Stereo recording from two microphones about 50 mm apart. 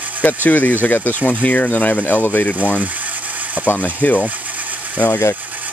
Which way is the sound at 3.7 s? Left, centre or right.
Left.